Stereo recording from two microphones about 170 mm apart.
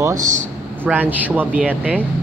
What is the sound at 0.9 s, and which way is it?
Speech, 10° right (ahead or behind).